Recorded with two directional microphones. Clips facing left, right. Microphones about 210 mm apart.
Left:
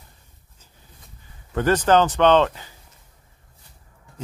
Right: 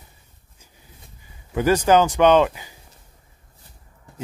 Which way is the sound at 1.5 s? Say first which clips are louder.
Right 1 dB; 10° right (ahead or behind).